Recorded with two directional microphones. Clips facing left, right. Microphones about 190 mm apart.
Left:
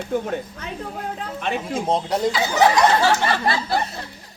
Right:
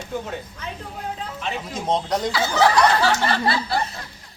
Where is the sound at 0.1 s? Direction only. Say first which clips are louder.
Left 5 dB; 55° left (ahead or behind).